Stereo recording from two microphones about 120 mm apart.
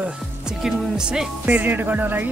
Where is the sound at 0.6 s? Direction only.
5° right (ahead or behind).